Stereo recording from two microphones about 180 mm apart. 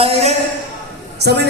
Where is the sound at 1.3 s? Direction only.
70° right (ahead or behind).